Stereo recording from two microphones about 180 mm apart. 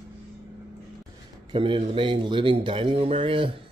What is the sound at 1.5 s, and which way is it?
Speech, 30° right (ahead or behind).